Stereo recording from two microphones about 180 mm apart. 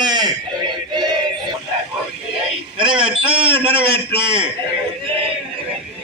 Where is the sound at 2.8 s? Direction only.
30° right (ahead or behind).